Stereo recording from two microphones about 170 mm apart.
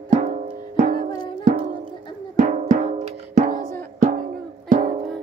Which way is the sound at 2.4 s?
45° right (ahead or behind).